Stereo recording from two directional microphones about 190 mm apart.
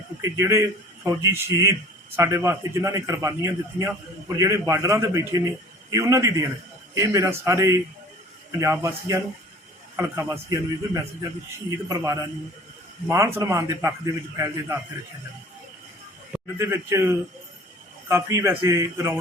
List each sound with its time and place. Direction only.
0.2 s a man's voice: 15° right (ahead or behind)
16.3 s a man's voice: 10° right (ahead or behind)